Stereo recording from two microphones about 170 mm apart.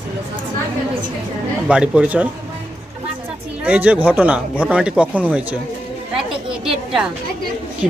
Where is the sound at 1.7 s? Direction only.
5° right (ahead or behind).